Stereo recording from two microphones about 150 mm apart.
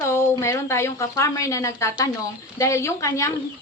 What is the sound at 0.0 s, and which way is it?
A woman's voice, 15° left (ahead or behind).